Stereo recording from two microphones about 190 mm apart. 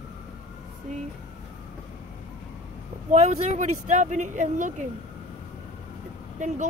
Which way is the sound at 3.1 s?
35° right (ahead or behind).